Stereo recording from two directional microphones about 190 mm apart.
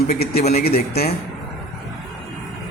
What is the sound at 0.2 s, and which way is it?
Speech, 55° left (ahead or behind).